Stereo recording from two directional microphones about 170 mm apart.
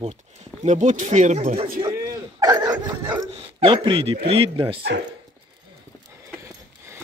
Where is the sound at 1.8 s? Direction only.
20° right (ahead or behind).